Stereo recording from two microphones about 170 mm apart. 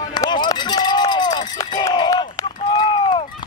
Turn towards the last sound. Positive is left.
turn(degrees=30)  # may be behind; listen again after turning